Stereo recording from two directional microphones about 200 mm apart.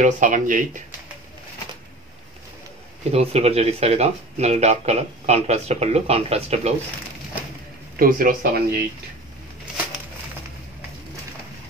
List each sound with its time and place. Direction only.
0.0 s speech: 40° right (ahead or behind)
3.0 s speech: 30° right (ahead or behind)
8.0 s speech: 45° right (ahead or behind)